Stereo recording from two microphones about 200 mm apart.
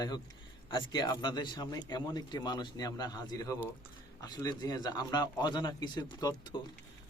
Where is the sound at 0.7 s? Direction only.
20° left (ahead or behind).